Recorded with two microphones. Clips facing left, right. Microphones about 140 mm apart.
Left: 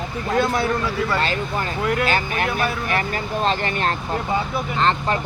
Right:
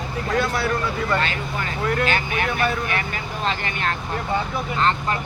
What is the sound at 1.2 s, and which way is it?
Speech, 35° left (ahead or behind).